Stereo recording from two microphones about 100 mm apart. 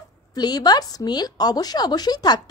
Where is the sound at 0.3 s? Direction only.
40° left (ahead or behind).